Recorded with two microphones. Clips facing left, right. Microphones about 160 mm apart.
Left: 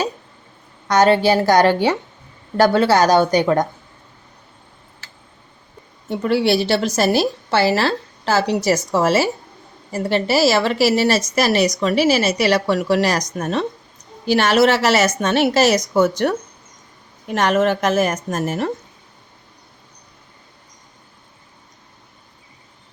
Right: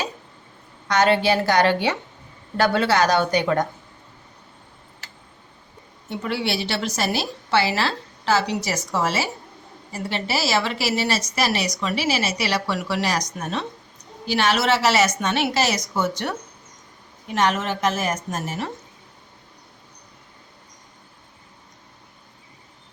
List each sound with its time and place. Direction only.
0.9 s a woman's voice: 40° left (ahead or behind)
6.1 s a woman's voice: 40° left (ahead or behind)
17.3 s a woman's voice: 50° left (ahead or behind)